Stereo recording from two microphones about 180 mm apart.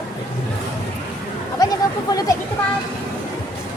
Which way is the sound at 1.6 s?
20° left (ahead or behind).